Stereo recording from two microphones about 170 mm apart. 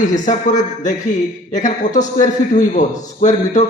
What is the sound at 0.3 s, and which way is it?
A man's voice, 45° left (ahead or behind).